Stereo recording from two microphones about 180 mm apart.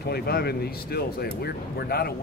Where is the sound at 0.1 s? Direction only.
60° left (ahead or behind).